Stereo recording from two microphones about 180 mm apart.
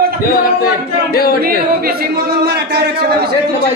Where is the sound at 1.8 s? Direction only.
60° right (ahead or behind).